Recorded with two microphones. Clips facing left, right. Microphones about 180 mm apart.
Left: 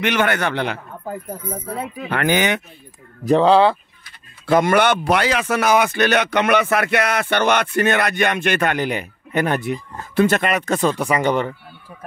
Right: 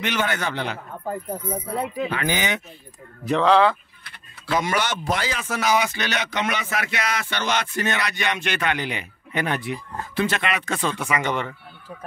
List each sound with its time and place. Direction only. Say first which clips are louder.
0.0 s speech: left 6 dB; 65° left (ahead or behind)
2.0 s speech: left 6 dB; 65° left (ahead or behind)
3.3 s speech: left 4 dB; 30° left (ahead or behind)
4.5 s speech: left 8 dB; 55° left (ahead or behind); by 11.5 s 35° left (ahead or behind)